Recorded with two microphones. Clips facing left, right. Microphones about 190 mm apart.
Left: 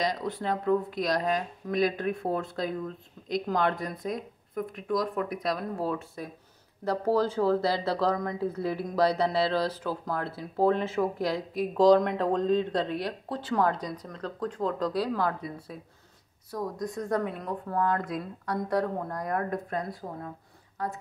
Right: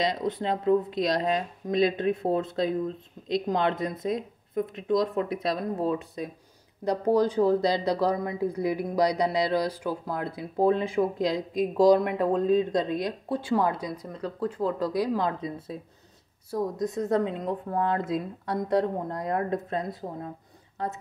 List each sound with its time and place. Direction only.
0.0 s speech: 20° right (ahead or behind)